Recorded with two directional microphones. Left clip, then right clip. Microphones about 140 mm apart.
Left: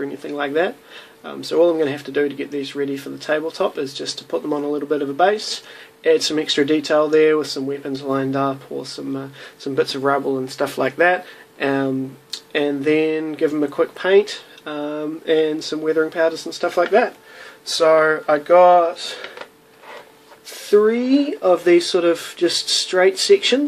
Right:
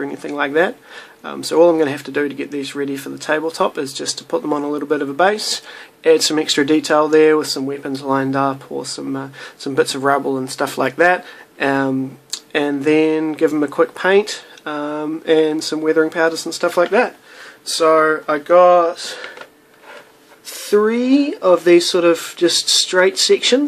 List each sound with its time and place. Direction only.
0.0 s speech: 35° right (ahead or behind)
17.6 s speech: 5° right (ahead or behind)
20.7 s speech: 30° right (ahead or behind)